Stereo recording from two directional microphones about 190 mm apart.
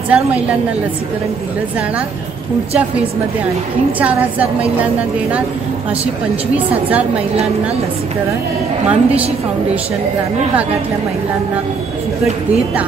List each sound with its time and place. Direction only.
0.1 s a woman's voice: 5° right (ahead or behind)
4.0 s a woman's voice: 5° right (ahead or behind)
6.5 s a woman's voice: 5° right (ahead or behind)
8.8 s a woman's voice: 5° right (ahead or behind)